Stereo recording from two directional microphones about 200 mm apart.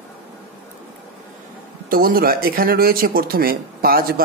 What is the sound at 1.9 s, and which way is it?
Speech, 45° right (ahead or behind).